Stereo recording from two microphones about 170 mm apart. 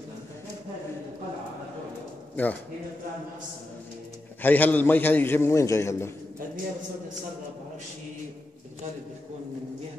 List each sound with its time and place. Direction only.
2.4 s a man's voice: 10° left (ahead or behind)
4.4 s a man's voice: 10° left (ahead or behind)